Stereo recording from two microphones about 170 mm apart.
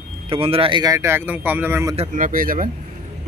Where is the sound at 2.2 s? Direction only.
55° right (ahead or behind).